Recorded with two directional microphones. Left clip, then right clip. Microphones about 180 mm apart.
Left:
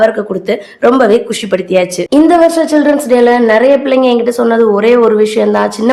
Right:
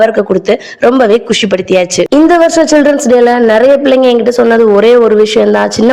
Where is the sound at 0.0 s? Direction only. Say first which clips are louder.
Right 3 dB; 35° right (ahead or behind).